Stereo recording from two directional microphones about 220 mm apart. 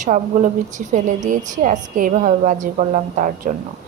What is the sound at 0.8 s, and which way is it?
A woman's voice, 35° right (ahead or behind).